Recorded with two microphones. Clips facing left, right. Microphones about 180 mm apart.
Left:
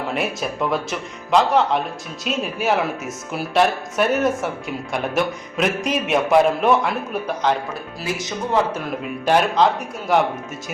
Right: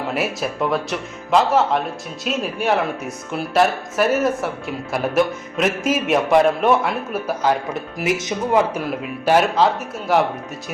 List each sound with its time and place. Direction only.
0.1 s speech: centre (ahead or behind)
7.9 s speech: 20° right (ahead or behind)
9.2 s speech: 5° right (ahead or behind)